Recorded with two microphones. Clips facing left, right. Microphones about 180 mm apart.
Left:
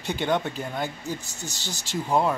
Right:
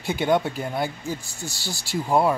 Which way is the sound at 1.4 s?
20° left (ahead or behind).